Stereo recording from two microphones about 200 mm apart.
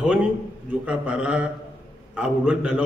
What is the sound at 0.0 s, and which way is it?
A man's voice, 5° right (ahead or behind).